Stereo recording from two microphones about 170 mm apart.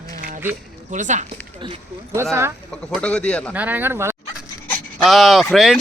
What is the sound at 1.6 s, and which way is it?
Speech, 30° right (ahead or behind).